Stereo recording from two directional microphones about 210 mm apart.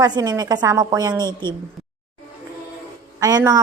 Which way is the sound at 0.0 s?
20° right (ahead or behind).